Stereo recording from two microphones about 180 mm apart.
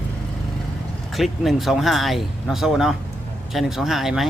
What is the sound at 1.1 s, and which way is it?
Speech, centre (ahead or behind).